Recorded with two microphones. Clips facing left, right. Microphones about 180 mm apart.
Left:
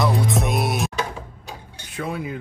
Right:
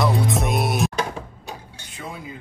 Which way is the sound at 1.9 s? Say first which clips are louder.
Left 7 dB; 65° left (ahead or behind).